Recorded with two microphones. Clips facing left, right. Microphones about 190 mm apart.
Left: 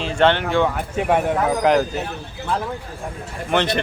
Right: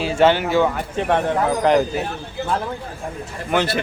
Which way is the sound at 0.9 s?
10° left (ahead or behind).